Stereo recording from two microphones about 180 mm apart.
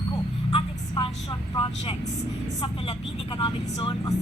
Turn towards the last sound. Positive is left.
turn(degrees=20)  # may be behind; listen again after turning